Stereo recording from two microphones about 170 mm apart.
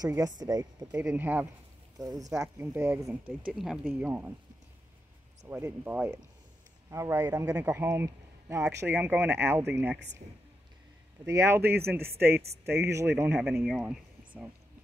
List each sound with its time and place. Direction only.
0.0 s speech: 20° right (ahead or behind)
0.9 s speech: 10° right (ahead or behind)
3.9 s speech: 10° right (ahead or behind)
5.4 s speech: 15° right (ahead or behind)
11.2 s speech: 15° right (ahead or behind)
13.7 s a sound: 10° right (ahead or behind)